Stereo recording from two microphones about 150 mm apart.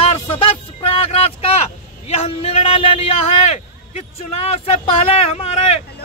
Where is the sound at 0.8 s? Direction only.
40° left (ahead or behind).